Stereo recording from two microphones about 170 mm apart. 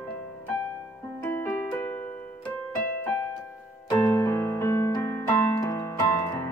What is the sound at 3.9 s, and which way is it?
Keyboard, 15° left (ahead or behind).